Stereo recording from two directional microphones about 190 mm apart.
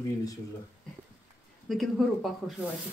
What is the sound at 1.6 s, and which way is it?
Speech, centre (ahead or behind).